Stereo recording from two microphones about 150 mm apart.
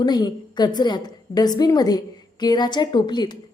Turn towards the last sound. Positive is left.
turn(degrees=30)  # may be behind; listen again after turning